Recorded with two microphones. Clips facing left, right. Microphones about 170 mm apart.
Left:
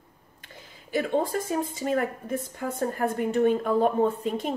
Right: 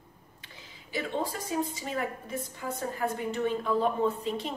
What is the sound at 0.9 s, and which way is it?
A woman's voice, 50° left (ahead or behind).